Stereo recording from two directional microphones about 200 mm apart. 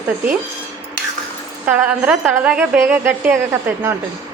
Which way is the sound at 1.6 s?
5° right (ahead or behind).